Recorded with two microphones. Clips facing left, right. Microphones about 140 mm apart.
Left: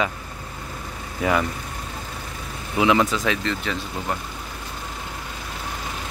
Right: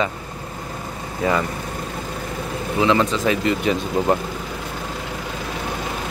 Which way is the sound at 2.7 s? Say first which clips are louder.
Right 1 dB; 15° left (ahead or behind).